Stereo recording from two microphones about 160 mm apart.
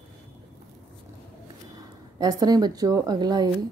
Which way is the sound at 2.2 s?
25° right (ahead or behind).